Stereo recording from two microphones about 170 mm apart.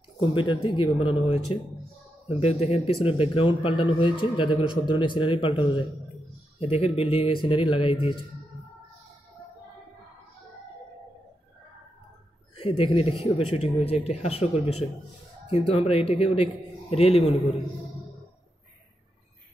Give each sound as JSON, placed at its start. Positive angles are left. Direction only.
{"t": 0.3, "sound": "speech", "side_deg": 30}
{"t": 12.5, "sound": "speech", "side_deg": 35}